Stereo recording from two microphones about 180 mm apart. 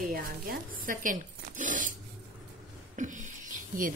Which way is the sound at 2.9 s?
45° right (ahead or behind).